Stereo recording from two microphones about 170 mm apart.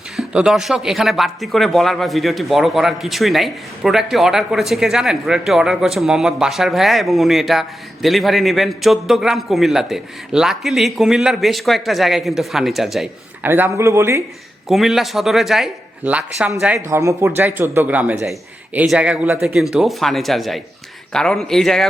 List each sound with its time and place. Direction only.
0.2 s speech: 5° right (ahead or behind)
13.5 s a man's voice: 15° right (ahead or behind)
14.7 s a man's voice: centre (ahead or behind)